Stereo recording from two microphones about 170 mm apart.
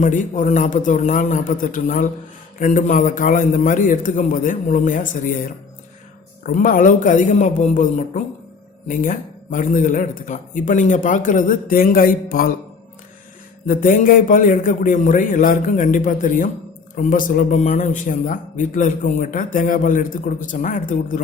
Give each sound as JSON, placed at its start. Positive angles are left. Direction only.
{"t": 0.0, "sound": "a man's voice", "side_deg": 50}
{"t": 6.4, "sound": "a man's voice", "side_deg": 55}
{"t": 13.7, "sound": "a man's voice", "side_deg": 55}